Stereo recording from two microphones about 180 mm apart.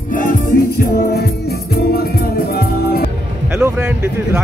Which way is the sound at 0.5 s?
55° left (ahead or behind).